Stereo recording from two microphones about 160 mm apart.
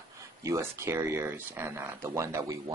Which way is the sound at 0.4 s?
20° right (ahead or behind).